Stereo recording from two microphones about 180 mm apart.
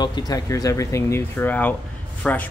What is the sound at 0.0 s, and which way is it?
Speech, 20° left (ahead or behind).